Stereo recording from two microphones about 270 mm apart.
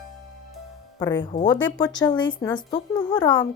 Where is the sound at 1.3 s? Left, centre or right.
Centre.